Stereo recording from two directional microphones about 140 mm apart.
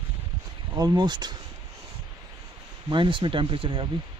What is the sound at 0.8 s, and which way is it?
Speech, 30° right (ahead or behind).